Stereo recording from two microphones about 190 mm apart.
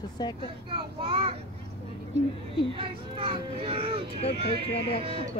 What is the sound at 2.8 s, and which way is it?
Speech, 30° right (ahead or behind).